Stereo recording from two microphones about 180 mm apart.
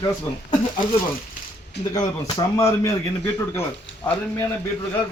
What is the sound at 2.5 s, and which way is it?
Speech, 15° left (ahead or behind).